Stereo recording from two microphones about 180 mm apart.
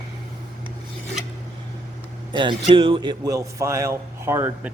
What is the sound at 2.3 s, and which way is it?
A man's voice, 25° right (ahead or behind).